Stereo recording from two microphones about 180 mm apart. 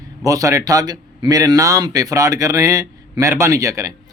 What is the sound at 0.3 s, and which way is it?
Speech, 20° right (ahead or behind).